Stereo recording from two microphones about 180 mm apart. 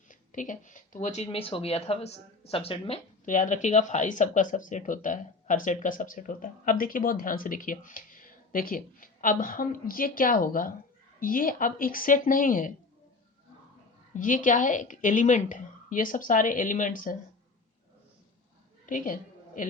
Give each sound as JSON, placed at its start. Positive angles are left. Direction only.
{"t": 0.1, "sound": "speech", "side_deg": 45}
{"t": 3.2, "sound": "speech", "side_deg": 45}
{"t": 14.1, "sound": "speech", "side_deg": 45}
{"t": 18.9, "sound": "a sound", "side_deg": 45}